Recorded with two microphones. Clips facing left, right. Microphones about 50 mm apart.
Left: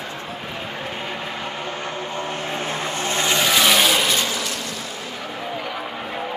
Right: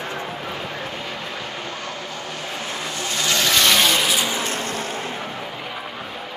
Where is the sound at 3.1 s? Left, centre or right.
Left.